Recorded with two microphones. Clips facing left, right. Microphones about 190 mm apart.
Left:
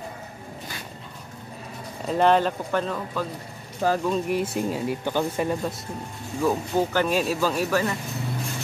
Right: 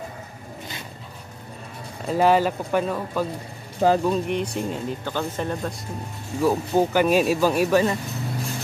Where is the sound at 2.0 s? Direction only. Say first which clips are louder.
Right 1 dB; 5° right (ahead or behind).